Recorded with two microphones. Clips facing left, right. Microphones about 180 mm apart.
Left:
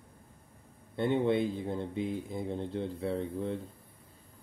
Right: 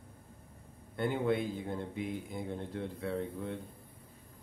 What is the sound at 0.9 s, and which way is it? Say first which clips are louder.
Speech: left 4 dB; 25° left (ahead or behind).